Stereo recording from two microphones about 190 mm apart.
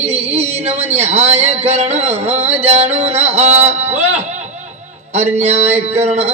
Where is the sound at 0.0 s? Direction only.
35° right (ahead or behind).